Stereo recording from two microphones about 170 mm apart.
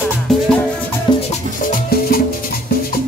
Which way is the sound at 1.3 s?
55° left (ahead or behind).